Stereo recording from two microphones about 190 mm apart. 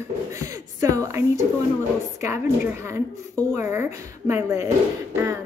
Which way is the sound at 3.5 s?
10° right (ahead or behind).